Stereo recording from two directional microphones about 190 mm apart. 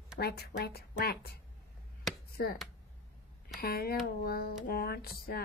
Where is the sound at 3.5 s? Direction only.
55° left (ahead or behind).